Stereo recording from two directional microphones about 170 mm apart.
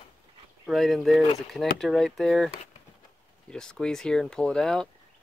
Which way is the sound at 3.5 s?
5° left (ahead or behind).